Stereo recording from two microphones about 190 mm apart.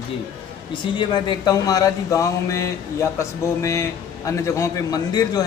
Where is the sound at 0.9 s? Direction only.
25° left (ahead or behind).